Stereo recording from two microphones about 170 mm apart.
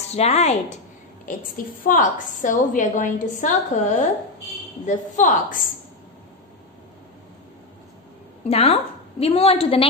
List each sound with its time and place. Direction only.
0.1 s a woman's voice: 40° left (ahead or behind)
1.8 s a woman's voice: 50° left (ahead or behind)
8.5 s a woman's voice: 35° left (ahead or behind)